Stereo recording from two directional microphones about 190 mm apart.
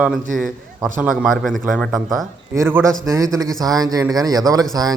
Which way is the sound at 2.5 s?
15° right (ahead or behind).